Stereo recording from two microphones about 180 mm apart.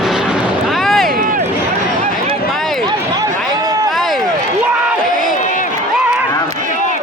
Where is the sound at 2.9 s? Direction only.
20° right (ahead or behind).